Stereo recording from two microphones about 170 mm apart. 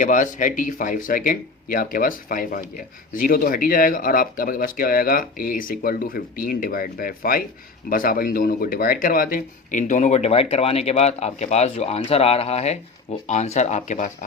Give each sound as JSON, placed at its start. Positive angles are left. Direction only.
{"t": 0.0, "sound": "speech", "side_deg": 50}